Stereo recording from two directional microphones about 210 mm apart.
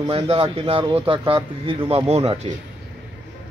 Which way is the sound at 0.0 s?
25° right (ahead or behind).